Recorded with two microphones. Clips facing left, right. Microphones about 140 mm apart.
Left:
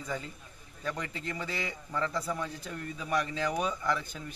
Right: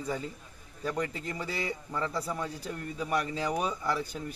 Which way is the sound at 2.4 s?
35° right (ahead or behind).